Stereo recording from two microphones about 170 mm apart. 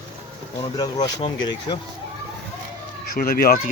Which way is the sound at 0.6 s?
25° left (ahead or behind).